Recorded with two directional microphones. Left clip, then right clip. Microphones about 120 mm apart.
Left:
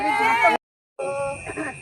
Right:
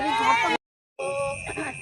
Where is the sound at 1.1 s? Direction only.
45° left (ahead or behind).